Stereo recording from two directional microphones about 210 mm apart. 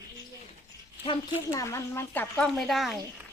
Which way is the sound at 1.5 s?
15° left (ahead or behind).